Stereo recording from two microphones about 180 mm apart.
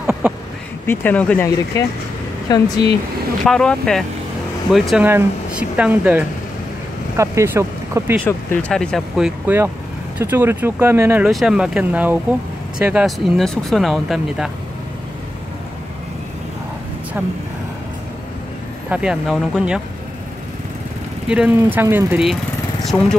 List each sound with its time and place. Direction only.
0.0 s a sound: 5° right (ahead or behind)
0.8 s speech: 10° left (ahead or behind)
2.5 s speech: 20° left (ahead or behind)
3.4 s speech: 5° left (ahead or behind); by 8.2 s 15° right (ahead or behind)
8.3 s speech: 10° left (ahead or behind)
18.9 s speech: 5° right (ahead or behind)
21.3 s speech: 5° right (ahead or behind)